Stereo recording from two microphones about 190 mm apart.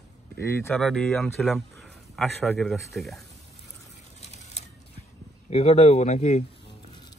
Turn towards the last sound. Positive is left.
turn(degrees=35)  # may be behind; listen again after turning